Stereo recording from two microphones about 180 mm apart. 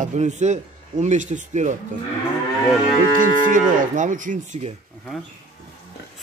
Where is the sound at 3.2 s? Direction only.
45° right (ahead or behind).